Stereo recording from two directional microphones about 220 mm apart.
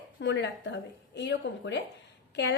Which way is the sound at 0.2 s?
55° left (ahead or behind).